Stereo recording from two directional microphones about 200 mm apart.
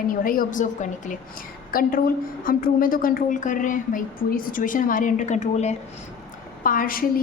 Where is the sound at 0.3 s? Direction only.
40° left (ahead or behind).